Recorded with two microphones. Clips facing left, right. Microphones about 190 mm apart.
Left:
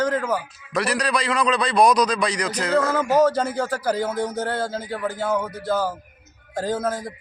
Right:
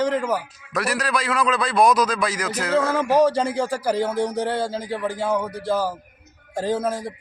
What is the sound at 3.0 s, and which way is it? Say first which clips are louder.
Speech: right 1 dB; 30° right (ahead or behind).